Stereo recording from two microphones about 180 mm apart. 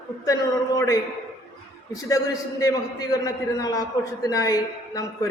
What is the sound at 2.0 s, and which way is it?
A man's voice, 20° left (ahead or behind).